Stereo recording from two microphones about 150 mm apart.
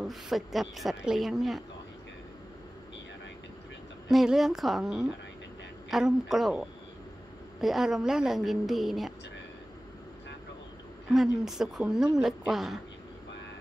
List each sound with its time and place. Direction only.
0.0 s a woman's voice: centre (ahead or behind)
4.1 s a woman's voice: centre (ahead or behind)
11.1 s a woman's voice: centre (ahead or behind)